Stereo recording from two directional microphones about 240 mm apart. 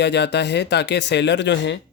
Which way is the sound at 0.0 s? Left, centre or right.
Left.